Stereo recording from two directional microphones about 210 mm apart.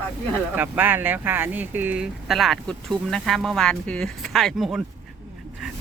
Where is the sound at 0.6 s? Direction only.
10° right (ahead or behind).